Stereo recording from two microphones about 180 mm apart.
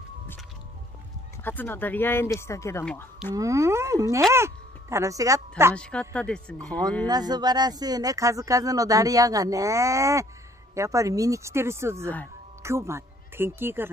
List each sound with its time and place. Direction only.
1.4 s speech: 10° left (ahead or behind)
3.3 s speech: 15° right (ahead or behind)
5.8 s speech: 5° left (ahead or behind)
7.1 s speech: 20° right (ahead or behind)